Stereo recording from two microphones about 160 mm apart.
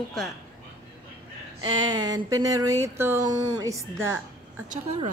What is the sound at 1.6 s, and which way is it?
Speech, 25° right (ahead or behind).